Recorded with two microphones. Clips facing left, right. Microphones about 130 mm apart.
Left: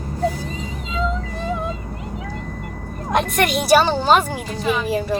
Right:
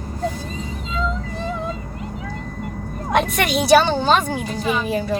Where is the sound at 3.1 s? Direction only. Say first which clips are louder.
Even; centre (ahead or behind).